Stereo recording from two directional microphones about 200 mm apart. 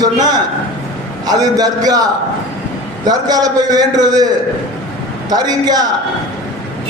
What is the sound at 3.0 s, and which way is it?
A man's voice, 20° right (ahead or behind).